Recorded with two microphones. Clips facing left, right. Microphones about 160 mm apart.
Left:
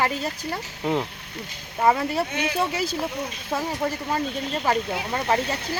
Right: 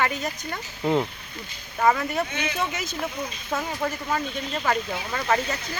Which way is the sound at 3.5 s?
10° left (ahead or behind).